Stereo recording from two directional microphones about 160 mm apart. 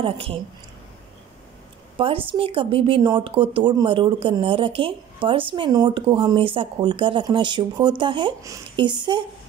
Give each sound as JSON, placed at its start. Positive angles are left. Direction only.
{"t": 0.0, "sound": "speech", "side_deg": -35}
{"t": 2.0, "sound": "speech", "side_deg": -35}